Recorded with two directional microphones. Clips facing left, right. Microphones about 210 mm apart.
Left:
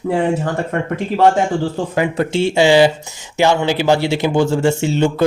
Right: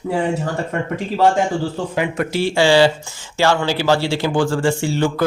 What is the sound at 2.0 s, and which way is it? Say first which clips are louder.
Speech: left 3 dB; 30° left (ahead or behind).